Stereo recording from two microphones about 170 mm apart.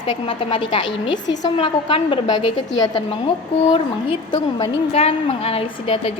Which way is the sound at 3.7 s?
25° left (ahead or behind).